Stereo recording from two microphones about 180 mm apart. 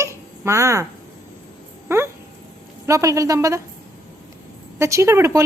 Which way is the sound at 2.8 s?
15° right (ahead or behind).